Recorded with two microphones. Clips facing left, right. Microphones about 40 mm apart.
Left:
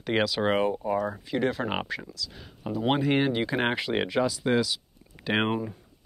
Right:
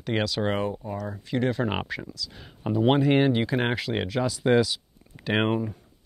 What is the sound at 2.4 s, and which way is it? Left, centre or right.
Speech, centre.